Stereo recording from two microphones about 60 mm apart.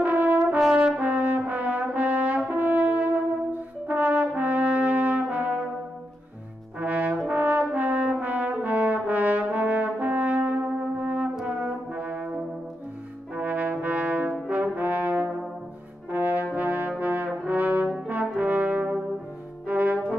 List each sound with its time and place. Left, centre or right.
0.0 s brass instrument: right
0.6 s brass instrument: centre
0.9 s brass instrument: right
6.8 s brass instrument: right